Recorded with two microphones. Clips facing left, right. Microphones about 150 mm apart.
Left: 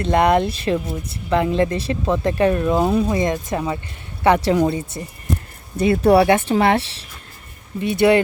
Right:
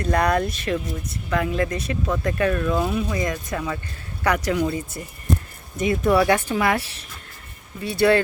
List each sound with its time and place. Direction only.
0.0 s speech: 25° left (ahead or behind)